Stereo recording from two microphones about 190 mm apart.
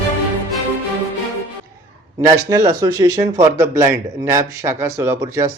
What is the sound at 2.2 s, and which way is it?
Speech, 15° right (ahead or behind).